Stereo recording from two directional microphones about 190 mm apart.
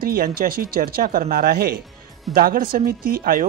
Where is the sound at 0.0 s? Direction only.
50° right (ahead or behind).